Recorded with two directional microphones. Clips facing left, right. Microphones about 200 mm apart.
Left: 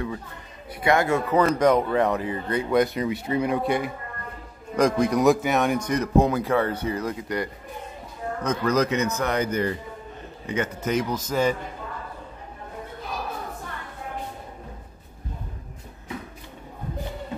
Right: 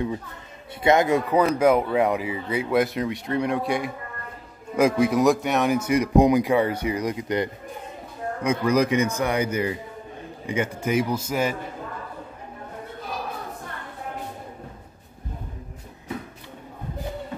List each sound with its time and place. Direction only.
0.8 s speech: 20° right (ahead or behind)
8.4 s speech: 10° right (ahead or behind)